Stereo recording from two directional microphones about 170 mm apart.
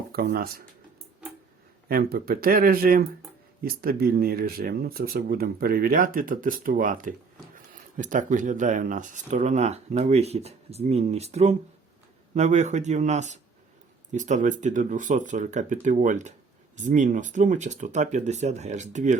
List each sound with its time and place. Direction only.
0.3 s speech: 60° right (ahead or behind)
1.9 s speech: 60° right (ahead or behind); by 19.1 s 45° right (ahead or behind)